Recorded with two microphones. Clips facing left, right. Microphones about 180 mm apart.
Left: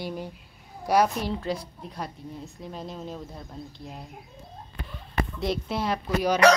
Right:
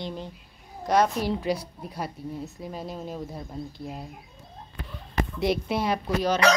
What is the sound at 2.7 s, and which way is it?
Speech, 5° right (ahead or behind).